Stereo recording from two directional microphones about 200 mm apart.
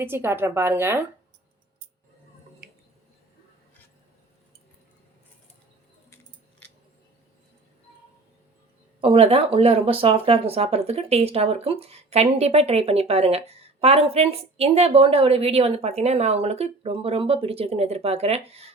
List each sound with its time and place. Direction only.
0.0 s a woman's voice: 10° right (ahead or behind)
9.0 s speech: 25° right (ahead or behind)